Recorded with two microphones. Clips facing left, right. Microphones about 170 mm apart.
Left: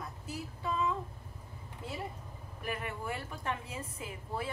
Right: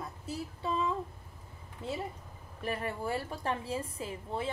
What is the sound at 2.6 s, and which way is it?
A woman's voice, 30° right (ahead or behind).